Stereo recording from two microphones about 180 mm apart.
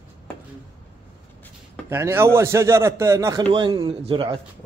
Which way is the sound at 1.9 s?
15° right (ahead or behind).